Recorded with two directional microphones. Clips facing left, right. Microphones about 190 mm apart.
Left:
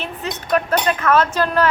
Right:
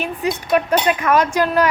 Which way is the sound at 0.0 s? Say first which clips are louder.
Right 5 dB; 10° right (ahead or behind).